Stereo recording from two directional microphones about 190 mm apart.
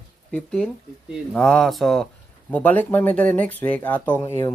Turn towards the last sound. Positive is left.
turn(degrees=10)  # may be behind; listen again after turning